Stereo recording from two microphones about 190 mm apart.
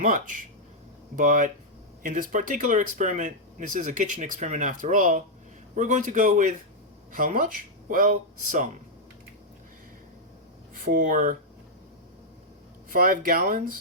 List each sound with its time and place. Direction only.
0.0 s a man's voice: 45° right (ahead or behind)
10.8 s speech: 45° right (ahead or behind)
12.9 s speech: 45° right (ahead or behind)